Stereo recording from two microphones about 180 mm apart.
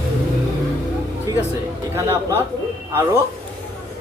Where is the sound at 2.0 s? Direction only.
15° right (ahead or behind).